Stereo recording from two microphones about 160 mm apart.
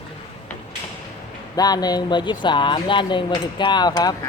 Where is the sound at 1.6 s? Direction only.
25° left (ahead or behind).